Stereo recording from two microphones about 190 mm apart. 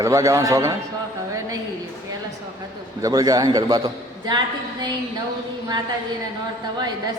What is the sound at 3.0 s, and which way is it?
A man's voice, 20° right (ahead or behind).